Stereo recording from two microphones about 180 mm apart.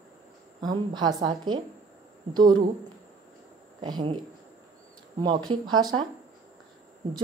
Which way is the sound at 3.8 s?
25° right (ahead or behind).